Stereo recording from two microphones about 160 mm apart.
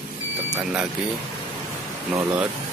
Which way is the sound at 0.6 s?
5° right (ahead or behind).